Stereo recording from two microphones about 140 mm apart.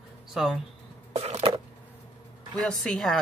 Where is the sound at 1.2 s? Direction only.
45° right (ahead or behind).